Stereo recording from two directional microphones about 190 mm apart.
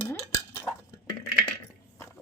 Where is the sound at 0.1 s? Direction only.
10° left (ahead or behind).